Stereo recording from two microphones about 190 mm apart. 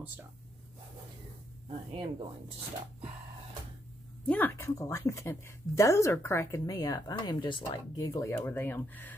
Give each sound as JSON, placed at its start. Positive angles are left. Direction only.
{"t": 1.7, "sound": "speech", "side_deg": -30}
{"t": 4.3, "sound": "speech", "side_deg": 10}